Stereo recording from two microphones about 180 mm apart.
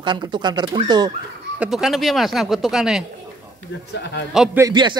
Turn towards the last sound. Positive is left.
turn(degrees=-25)  # may be behind; listen again after turning